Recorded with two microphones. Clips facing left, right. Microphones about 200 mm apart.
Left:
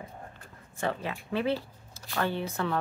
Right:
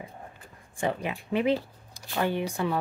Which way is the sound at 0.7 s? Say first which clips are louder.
Right 3 dB; 15° right (ahead or behind).